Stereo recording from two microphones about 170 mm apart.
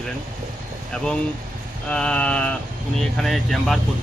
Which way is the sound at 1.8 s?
5° left (ahead or behind).